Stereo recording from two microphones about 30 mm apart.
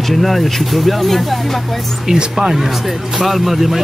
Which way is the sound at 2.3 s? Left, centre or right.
Centre.